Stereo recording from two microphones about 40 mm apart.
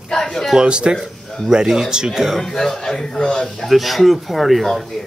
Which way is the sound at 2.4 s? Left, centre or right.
Centre.